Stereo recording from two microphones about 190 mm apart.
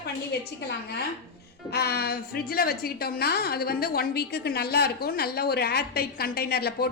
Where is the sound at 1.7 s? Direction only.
55° left (ahead or behind).